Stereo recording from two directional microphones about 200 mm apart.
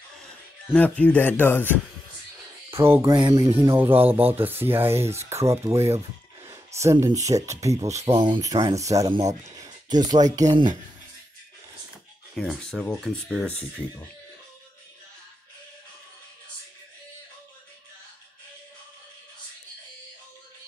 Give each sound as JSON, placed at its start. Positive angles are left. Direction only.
{"t": 0.1, "sound": "speech", "side_deg": 5}
{"t": 2.8, "sound": "speech", "side_deg": -15}
{"t": 8.0, "sound": "speech", "side_deg": -25}
{"t": 12.4, "sound": "speech", "side_deg": 5}